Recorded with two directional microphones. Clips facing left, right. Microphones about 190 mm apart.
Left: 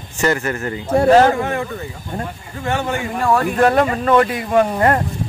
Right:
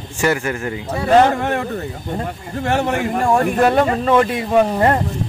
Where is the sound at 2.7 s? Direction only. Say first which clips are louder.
Right 2 dB; 70° right (ahead or behind).